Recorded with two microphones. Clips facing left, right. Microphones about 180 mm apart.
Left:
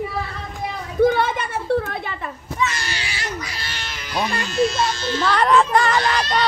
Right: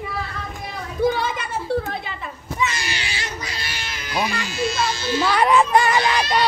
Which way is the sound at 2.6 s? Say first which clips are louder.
Even; 15° right (ahead or behind).